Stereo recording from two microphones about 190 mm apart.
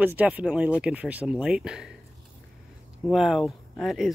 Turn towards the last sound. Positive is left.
turn(degrees=0)  # may be behind; listen again after turning